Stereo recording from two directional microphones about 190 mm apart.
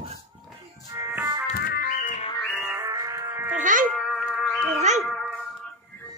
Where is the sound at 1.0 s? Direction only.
15° right (ahead or behind).